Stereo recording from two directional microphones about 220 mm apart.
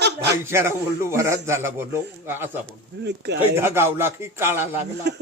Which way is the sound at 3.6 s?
10° right (ahead or behind).